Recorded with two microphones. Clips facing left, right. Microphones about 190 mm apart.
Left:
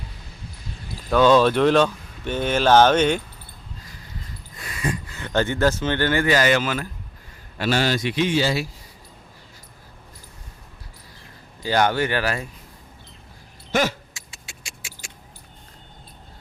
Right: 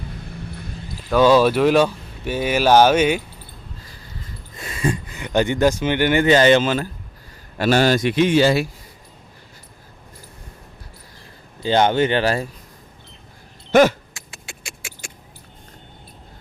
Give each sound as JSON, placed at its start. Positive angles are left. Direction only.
{"t": 0.3, "sound": "a sound", "side_deg": -60}
{"t": 1.1, "sound": "speech", "side_deg": -10}
{"t": 4.5, "sound": "speech", "side_deg": -25}
{"t": 7.6, "sound": "a man's voice", "side_deg": -45}
{"t": 11.6, "sound": "speech", "side_deg": -25}
{"t": 13.7, "sound": "a sound", "side_deg": -55}